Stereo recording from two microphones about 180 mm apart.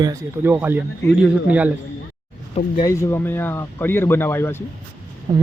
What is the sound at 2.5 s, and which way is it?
Speech, 35° left (ahead or behind).